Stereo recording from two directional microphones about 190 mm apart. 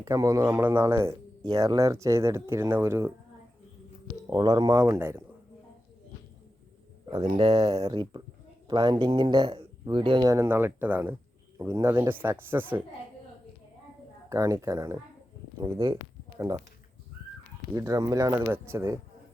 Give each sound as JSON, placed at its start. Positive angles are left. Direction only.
{"t": 0.0, "sound": "speech", "side_deg": -20}
{"t": 4.3, "sound": "speech", "side_deg": -20}
{"t": 7.2, "sound": "speech", "side_deg": -35}
{"t": 7.7, "sound": "speech", "side_deg": -20}
{"t": 14.3, "sound": "speech", "side_deg": -15}
{"t": 17.7, "sound": "speech", "side_deg": -20}